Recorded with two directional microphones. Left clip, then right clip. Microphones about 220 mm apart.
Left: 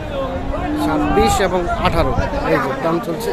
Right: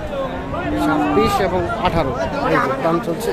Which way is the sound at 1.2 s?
10° left (ahead or behind).